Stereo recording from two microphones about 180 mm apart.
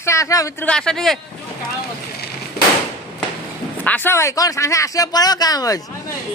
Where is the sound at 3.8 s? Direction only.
10° left (ahead or behind).